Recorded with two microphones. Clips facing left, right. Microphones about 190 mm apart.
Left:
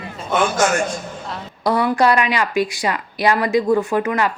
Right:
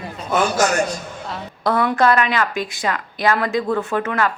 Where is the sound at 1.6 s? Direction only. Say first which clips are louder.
Left 1 dB; 15° left (ahead or behind).